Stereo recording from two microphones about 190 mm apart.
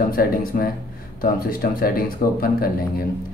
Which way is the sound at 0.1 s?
50° left (ahead or behind).